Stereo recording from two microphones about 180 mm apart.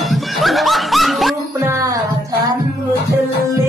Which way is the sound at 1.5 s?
15° right (ahead or behind).